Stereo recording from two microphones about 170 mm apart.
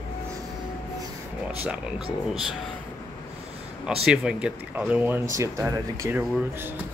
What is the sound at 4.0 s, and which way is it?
Speech, 5° right (ahead or behind).